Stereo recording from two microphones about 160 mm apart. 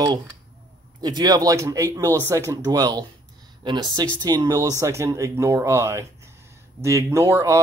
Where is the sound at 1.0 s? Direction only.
25° right (ahead or behind).